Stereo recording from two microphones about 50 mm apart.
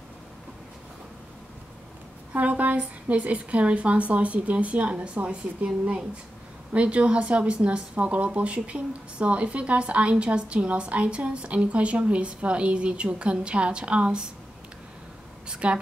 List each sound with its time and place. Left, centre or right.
2.3 s speech: right
15.4 s speech: right